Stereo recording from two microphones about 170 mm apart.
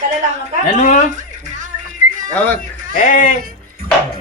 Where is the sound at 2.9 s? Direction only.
50° left (ahead or behind).